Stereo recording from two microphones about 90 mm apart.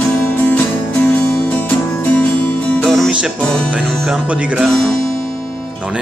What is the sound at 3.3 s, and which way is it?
Speech, 10° left (ahead or behind).